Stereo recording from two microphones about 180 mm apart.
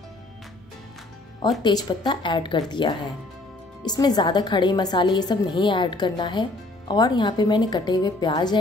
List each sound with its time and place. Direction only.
1.6 s a woman's voice: 25° left (ahead or behind)